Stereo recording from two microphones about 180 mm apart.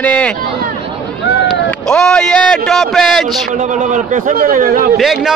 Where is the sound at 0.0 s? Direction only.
5° left (ahead or behind).